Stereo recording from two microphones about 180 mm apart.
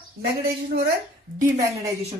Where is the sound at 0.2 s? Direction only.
65° right (ahead or behind).